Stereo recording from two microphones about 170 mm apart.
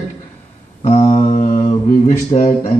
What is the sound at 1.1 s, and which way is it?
Mantra, 45° left (ahead or behind).